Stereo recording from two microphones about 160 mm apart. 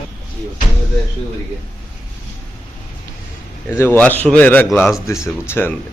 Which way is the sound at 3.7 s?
15° left (ahead or behind).